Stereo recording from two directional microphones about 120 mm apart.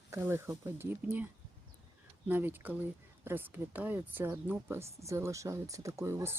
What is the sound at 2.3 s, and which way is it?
Speech, 15° right (ahead or behind).